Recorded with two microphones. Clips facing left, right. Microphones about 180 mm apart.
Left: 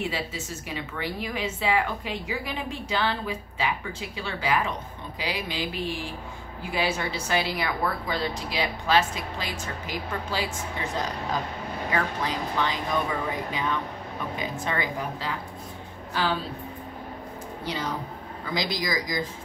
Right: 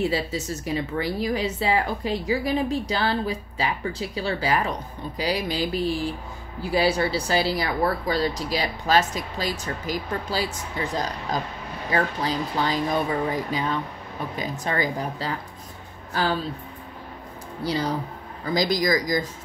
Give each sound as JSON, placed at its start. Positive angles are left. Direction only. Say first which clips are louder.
{"t": 0.0, "sound": "speech", "louder": "right 6 dB", "side_deg": -35}
{"t": 11.9, "sound": "a woman's voice", "louder": "right 4 dB", "side_deg": -35}
{"t": 17.6, "sound": "speech", "louder": "right 6 dB", "side_deg": -35}